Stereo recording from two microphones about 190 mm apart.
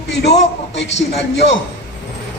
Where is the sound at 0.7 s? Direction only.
70° left (ahead or behind).